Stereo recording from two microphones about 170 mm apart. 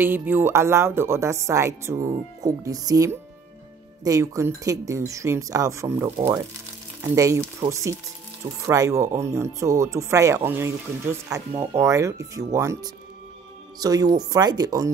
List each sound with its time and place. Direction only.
0.0 s speech: 10° right (ahead or behind)